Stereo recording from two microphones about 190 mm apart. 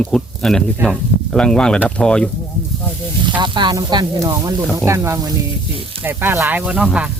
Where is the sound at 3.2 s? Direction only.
25° right (ahead or behind); by 7.1 s 5° right (ahead or behind).